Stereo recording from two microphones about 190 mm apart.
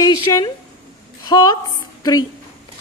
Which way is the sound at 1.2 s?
20° left (ahead or behind).